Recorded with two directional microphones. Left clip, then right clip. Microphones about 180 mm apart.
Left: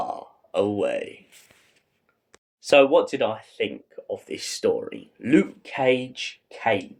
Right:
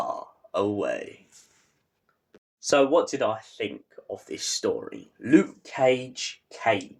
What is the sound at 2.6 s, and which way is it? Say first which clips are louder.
Speech: left 4 dB; 30° left (ahead or behind).